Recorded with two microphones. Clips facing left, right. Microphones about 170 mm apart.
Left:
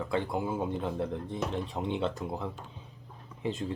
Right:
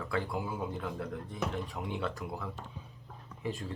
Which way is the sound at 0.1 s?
25° left (ahead or behind).